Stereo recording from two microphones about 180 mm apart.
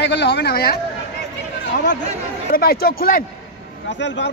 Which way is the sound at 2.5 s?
55° left (ahead or behind).